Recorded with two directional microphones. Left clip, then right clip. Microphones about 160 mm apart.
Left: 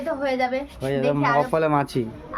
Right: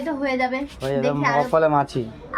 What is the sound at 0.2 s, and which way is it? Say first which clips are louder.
Speech: right 1 dB; 15° left (ahead or behind).